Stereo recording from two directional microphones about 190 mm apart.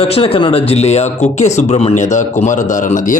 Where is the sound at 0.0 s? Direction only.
30° left (ahead or behind).